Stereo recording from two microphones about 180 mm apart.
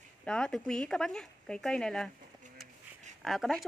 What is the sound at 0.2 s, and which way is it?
Speech, 5° left (ahead or behind).